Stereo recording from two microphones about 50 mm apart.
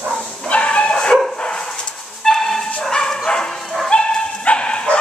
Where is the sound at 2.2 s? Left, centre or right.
Centre.